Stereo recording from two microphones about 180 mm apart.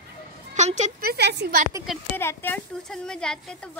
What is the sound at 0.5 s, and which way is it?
A woman's voice, 40° right (ahead or behind).